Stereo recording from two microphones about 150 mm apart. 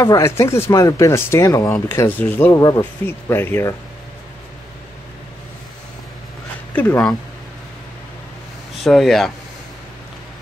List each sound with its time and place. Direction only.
0.0 s speech: 20° left (ahead or behind)
6.7 s speech: 10° left (ahead or behind)
8.8 s speech: centre (ahead or behind)